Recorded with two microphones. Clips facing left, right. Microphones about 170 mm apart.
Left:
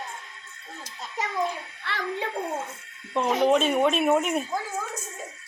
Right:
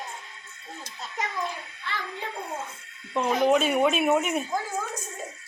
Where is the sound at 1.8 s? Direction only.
75° left (ahead or behind).